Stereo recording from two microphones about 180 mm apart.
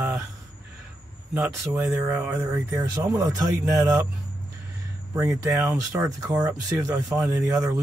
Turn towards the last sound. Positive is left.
turn(degrees=-20)  # may be behind; listen again after turning